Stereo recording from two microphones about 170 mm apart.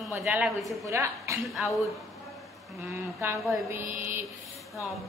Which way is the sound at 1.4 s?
Centre (ahead or behind).